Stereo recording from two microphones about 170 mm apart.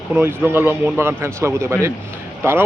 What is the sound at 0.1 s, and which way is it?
Speech, 15° right (ahead or behind).